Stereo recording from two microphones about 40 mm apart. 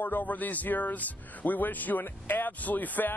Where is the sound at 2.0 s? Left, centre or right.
Left.